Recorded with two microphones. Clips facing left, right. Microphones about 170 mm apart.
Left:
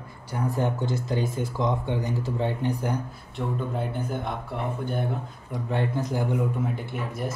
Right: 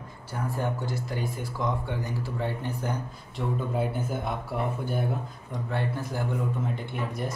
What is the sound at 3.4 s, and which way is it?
Speech, 5° right (ahead or behind).